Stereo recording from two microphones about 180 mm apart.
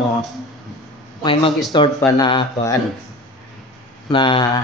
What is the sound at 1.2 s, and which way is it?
Speech, 30° left (ahead or behind).